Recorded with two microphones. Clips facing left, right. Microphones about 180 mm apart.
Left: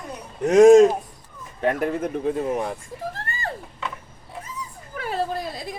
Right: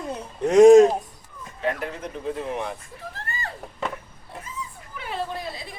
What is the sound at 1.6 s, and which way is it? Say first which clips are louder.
Speech: left 6 dB; 50° left (ahead or behind).